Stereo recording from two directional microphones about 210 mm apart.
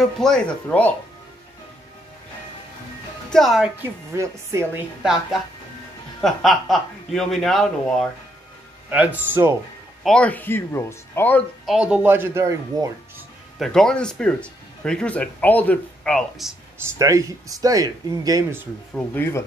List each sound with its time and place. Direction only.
0.0 s speech: centre (ahead or behind)
3.3 s speech: centre (ahead or behind)
4.1 s speech: 15° right (ahead or behind)
5.0 s speech: centre (ahead or behind)
10.0 s speech: 5° left (ahead or behind)
11.6 s speech: 5° right (ahead or behind)
13.6 s speech: centre (ahead or behind)
16.7 s speech: 15° right (ahead or behind)
19.1 s speech: 10° left (ahead or behind)